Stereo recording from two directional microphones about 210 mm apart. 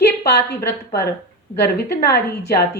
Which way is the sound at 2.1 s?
50° left (ahead or behind).